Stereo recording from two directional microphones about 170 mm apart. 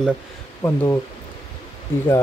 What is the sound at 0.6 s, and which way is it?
Speech, 15° left (ahead or behind).